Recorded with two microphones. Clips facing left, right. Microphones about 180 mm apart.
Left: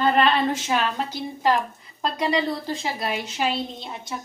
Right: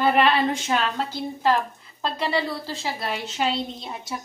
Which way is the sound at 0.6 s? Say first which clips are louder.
Even; 10° left (ahead or behind).